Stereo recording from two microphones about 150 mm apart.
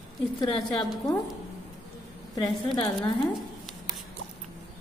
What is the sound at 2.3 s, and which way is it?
Speech, 30° left (ahead or behind).